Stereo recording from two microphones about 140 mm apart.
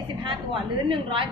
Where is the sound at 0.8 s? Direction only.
40° right (ahead or behind).